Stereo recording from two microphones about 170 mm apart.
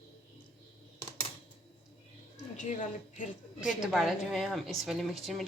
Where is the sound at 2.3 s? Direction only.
45° left (ahead or behind).